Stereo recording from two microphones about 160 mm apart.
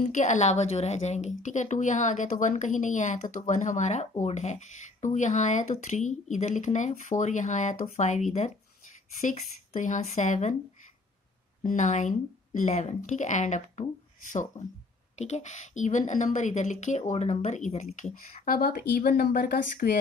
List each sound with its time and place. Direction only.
0.0 s a woman's voice: 50° left (ahead or behind)
11.6 s a woman's voice: 50° left (ahead or behind); by 20.0 s 70° left (ahead or behind)